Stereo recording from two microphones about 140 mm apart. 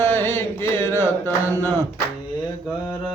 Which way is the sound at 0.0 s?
15° left (ahead or behind).